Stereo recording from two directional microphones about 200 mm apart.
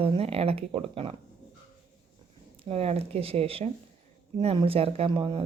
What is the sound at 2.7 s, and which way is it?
Speech, 30° right (ahead or behind).